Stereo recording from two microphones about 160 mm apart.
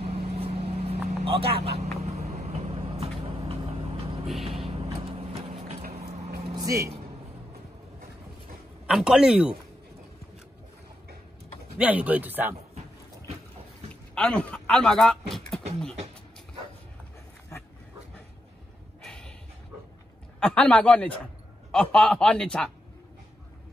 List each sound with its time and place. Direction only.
0.0 s vehicle: 35° right (ahead or behind)
5.9 s a sound: 40° right (ahead or behind)
6.4 s vehicle: 25° right (ahead or behind)
8.8 s a man's voice: 5° right (ahead or behind)
11.8 s speech: 10° right (ahead or behind)
14.1 s speech: 5° left (ahead or behind)
19.0 s snort: 5° left (ahead or behind)
20.3 s a man's voice: 10° left (ahead or behind)